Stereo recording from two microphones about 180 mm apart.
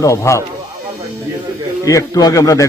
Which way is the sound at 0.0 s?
15° left (ahead or behind).